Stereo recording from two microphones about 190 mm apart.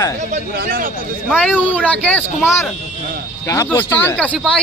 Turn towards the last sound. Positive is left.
turn(degrees=5)  # may be behind; listen again after turning